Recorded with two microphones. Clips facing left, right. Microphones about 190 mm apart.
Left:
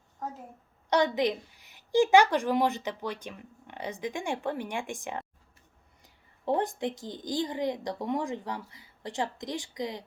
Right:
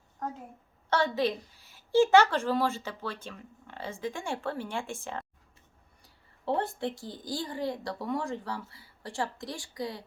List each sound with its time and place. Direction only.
0.9 s a woman's voice: 15° left (ahead or behind)